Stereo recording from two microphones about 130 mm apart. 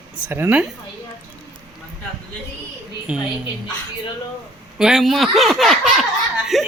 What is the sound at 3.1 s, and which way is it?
Speech, 10° right (ahead or behind).